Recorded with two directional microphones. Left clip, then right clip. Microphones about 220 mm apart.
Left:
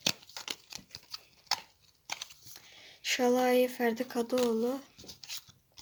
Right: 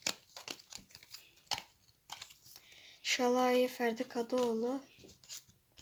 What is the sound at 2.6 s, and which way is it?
Speech, 5° left (ahead or behind).